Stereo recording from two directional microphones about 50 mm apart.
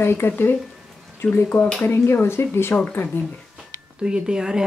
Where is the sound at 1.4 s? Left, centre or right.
Left.